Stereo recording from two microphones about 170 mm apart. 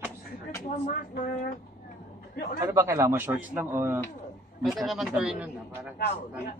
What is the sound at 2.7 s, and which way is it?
A woman's voice, 15° right (ahead or behind).